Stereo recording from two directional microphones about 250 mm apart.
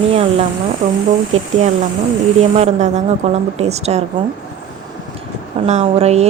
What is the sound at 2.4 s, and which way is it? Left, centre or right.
Speech, right.